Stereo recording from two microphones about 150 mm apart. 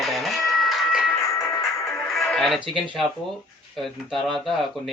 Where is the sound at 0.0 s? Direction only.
Centre (ahead or behind).